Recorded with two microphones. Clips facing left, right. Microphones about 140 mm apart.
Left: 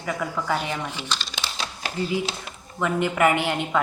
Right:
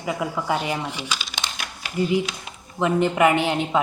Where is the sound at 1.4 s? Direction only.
35° left (ahead or behind).